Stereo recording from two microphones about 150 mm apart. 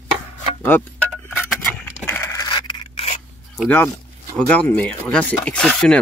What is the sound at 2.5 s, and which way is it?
Scrape, 30° left (ahead or behind).